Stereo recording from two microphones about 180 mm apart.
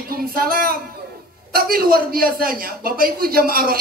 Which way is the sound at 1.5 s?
55° right (ahead or behind).